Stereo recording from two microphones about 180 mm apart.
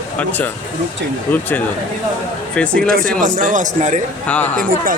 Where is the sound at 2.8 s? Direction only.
55° right (ahead or behind).